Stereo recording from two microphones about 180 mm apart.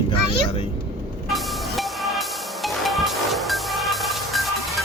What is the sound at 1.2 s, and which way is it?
Music, centre (ahead or behind).